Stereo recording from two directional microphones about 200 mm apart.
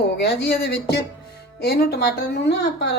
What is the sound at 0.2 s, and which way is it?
Speech, 55° left (ahead or behind).